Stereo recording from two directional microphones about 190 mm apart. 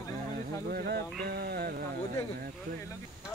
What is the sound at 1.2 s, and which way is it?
Music, 55° right (ahead or behind).